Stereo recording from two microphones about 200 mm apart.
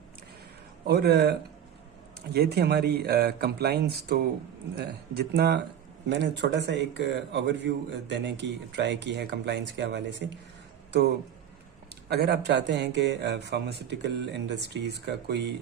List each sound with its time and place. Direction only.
0.8 s a man's voice: 55° right (ahead or behind)
2.3 s a man's voice: 55° right (ahead or behind)